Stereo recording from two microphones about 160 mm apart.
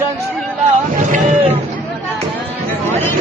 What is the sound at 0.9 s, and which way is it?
Boat, 50° right (ahead or behind).